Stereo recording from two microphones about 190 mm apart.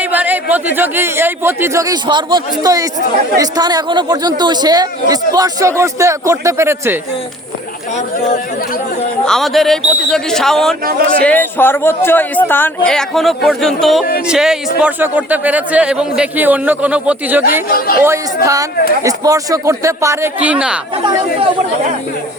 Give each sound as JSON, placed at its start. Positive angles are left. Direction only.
{"t": 0.0, "sound": "a man's voice", "side_deg": -10}
{"t": 7.9, "sound": "speech", "side_deg": 40}
{"t": 9.2, "sound": "speech", "side_deg": 0}
{"t": 10.8, "sound": "speech", "side_deg": -50}
{"t": 11.2, "sound": "a man's voice", "side_deg": 10}
{"t": 17.7, "sound": "a woman's voice", "side_deg": 50}
{"t": 18.4, "sound": "a man's voice", "side_deg": -15}